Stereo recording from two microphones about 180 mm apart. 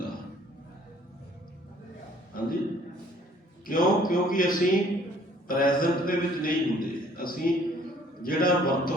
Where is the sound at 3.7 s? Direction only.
50° left (ahead or behind).